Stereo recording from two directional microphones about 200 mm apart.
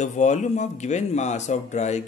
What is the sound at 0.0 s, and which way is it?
Speech, 35° left (ahead or behind).